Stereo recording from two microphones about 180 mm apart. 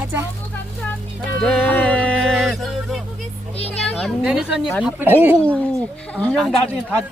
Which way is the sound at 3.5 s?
35° left (ahead or behind).